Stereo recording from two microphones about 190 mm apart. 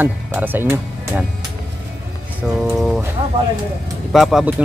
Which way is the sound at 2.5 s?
Centre (ahead or behind).